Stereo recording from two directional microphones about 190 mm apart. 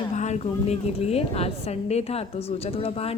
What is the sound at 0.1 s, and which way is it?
Speech, 40° left (ahead or behind).